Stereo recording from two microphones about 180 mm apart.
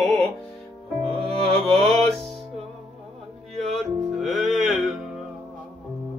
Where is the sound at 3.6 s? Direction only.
Centre (ahead or behind).